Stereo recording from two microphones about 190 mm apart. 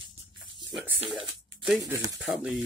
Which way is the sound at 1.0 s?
25° right (ahead or behind).